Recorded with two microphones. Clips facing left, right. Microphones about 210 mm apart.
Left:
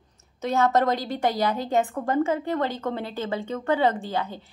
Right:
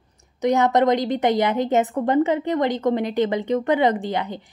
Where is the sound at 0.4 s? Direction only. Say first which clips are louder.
Right 4 dB; 15° right (ahead or behind).